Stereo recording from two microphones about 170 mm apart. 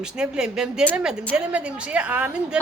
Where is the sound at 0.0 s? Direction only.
5° right (ahead or behind).